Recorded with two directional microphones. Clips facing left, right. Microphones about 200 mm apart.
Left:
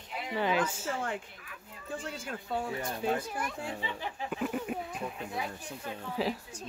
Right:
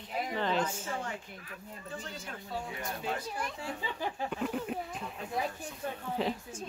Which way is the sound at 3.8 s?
45° right (ahead or behind).